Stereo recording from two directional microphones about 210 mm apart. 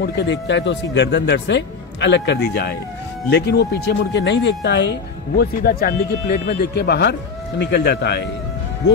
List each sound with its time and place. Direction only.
0.0 s speech: 55° left (ahead or behind)